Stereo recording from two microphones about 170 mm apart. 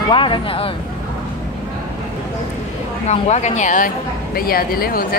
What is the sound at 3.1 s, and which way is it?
Speech, 40° left (ahead or behind).